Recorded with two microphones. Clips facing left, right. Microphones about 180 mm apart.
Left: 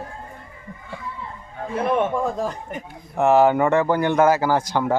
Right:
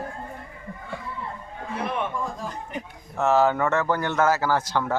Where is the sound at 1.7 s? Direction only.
50° left (ahead or behind).